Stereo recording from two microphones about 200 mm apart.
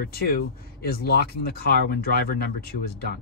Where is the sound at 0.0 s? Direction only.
50° left (ahead or behind).